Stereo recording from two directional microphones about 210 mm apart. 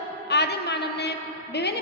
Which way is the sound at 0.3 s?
55° left (ahead or behind).